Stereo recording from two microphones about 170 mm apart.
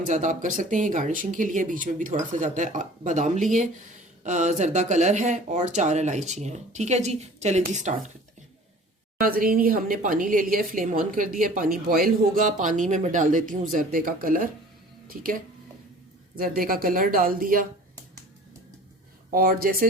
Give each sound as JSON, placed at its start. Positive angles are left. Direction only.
{"t": 0.0, "sound": "speech", "side_deg": -50}
{"t": 9.2, "sound": "a woman's voice", "side_deg": -55}
{"t": 16.4, "sound": "speech", "side_deg": -55}
{"t": 19.3, "sound": "speech", "side_deg": -60}